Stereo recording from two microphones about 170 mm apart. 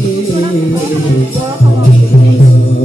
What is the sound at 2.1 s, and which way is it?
Music, 50° left (ahead or behind).